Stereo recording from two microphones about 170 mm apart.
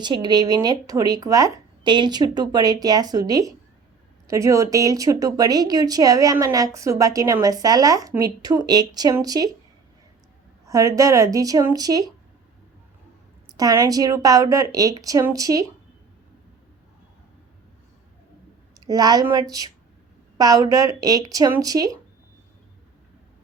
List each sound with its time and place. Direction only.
0.0 s speech: 25° right (ahead or behind)
10.7 s speech: 20° right (ahead or behind)
13.6 s speech: 20° right (ahead or behind)
18.9 s speech: 25° right (ahead or behind)